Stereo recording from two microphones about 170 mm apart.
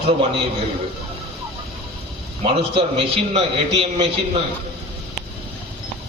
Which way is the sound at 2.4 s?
35° right (ahead or behind).